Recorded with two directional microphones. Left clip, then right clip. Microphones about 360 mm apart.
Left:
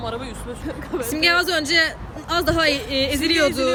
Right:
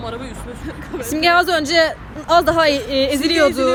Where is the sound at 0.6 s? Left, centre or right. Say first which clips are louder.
Left 1 dB; left.